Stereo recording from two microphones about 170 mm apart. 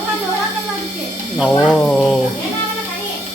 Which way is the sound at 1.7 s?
5° left (ahead or behind).